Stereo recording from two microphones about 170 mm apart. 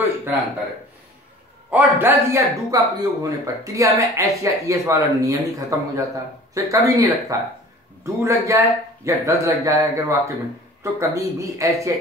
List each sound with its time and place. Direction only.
1.7 s a man's voice: 10° right (ahead or behind)